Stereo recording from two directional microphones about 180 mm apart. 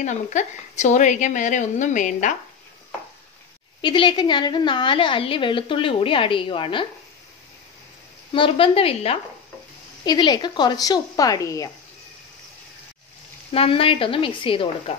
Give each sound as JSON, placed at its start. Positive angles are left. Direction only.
{"t": 0.0, "sound": "a woman's voice", "side_deg": 40}
{"t": 3.8, "sound": "a woman's voice", "side_deg": 25}
{"t": 8.3, "sound": "a woman's voice", "side_deg": 30}
{"t": 13.5, "sound": "a woman's voice", "side_deg": 30}